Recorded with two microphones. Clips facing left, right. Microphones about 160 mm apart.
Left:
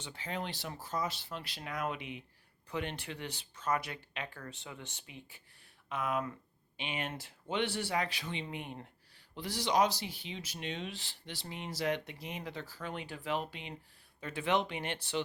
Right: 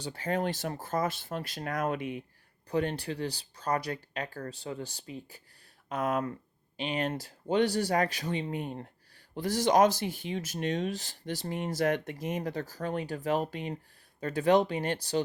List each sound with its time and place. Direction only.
0.0 s speech: 40° right (ahead or behind)